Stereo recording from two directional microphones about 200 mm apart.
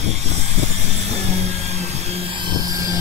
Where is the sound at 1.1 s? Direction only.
30° right (ahead or behind).